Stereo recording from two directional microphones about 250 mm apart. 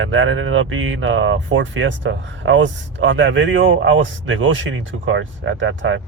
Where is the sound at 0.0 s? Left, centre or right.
Right.